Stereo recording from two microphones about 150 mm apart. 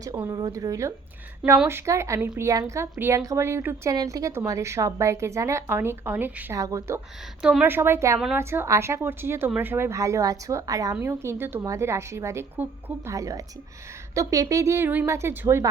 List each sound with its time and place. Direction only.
0.3 s speech: 25° right (ahead or behind)
7.4 s speech: 10° right (ahead or behind)